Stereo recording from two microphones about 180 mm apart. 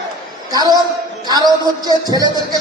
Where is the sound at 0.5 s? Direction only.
20° right (ahead or behind).